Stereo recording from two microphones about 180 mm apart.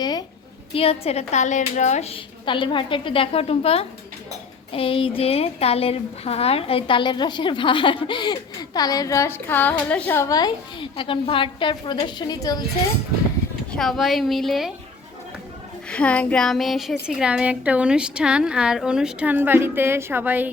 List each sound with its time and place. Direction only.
0.0 s a sound: 25° left (ahead or behind)
0.7 s a woman's voice: 30° left (ahead or behind)
13.7 s a woman's voice: centre (ahead or behind)
15.9 s a woman's voice: 5° left (ahead or behind); by 20.5 s 10° right (ahead or behind)